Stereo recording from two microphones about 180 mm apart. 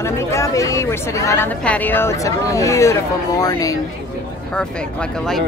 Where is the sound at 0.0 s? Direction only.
15° left (ahead or behind).